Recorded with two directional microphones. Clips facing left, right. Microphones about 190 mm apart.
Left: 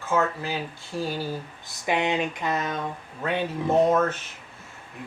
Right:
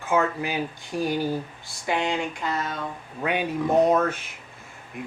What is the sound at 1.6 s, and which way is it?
Speech, 20° left (ahead or behind).